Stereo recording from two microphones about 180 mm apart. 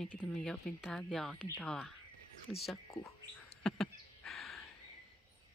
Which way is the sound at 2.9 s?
15° left (ahead or behind).